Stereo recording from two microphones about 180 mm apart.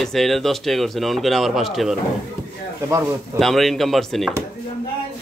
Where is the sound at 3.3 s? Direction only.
Centre (ahead or behind).